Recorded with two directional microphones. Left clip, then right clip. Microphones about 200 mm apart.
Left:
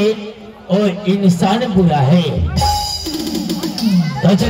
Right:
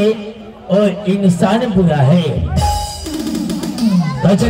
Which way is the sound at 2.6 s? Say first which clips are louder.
Left 3 dB; 25° left (ahead or behind).